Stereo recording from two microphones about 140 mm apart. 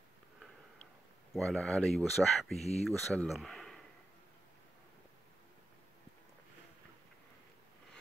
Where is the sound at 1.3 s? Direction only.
Centre (ahead or behind).